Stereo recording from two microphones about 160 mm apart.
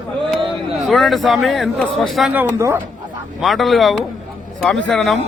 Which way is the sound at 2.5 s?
20° right (ahead or behind).